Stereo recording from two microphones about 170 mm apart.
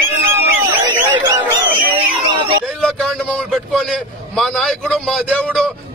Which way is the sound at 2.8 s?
5° left (ahead or behind).